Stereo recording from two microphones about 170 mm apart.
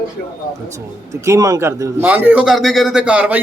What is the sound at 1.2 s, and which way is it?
A man's voice, 20° right (ahead or behind).